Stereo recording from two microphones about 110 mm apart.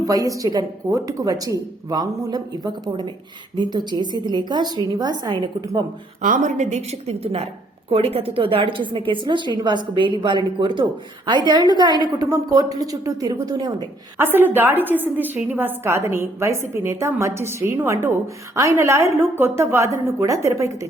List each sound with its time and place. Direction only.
0.0 s a woman's voice: 30° right (ahead or behind)
3.6 s a woman's voice: 40° right (ahead or behind)
6.4 s a woman's voice: 90° right
7.9 s a woman's voice: 65° right (ahead or behind); by 13.7 s 35° right (ahead or behind)
14.2 s a woman's voice: 20° right (ahead or behind)